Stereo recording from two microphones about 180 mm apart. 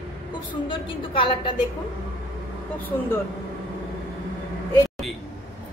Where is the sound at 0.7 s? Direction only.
30° left (ahead or behind).